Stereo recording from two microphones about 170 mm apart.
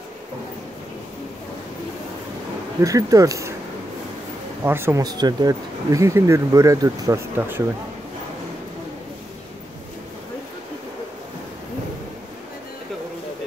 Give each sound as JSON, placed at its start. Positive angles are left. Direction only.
{"t": 2.8, "sound": "speech", "side_deg": -20}
{"t": 4.6, "sound": "speech", "side_deg": -15}